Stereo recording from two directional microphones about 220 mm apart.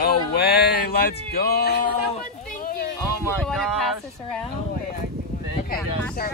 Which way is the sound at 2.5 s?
40° left (ahead or behind).